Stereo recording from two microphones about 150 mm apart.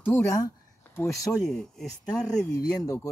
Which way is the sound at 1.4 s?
5° left (ahead or behind).